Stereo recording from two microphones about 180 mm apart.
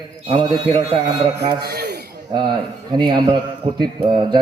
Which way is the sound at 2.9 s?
25° right (ahead or behind).